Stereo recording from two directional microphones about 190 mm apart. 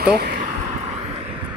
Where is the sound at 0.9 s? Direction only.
30° right (ahead or behind).